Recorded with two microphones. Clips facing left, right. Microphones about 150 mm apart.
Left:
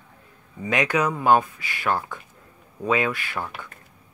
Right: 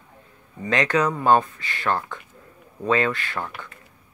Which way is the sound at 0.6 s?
10° left (ahead or behind).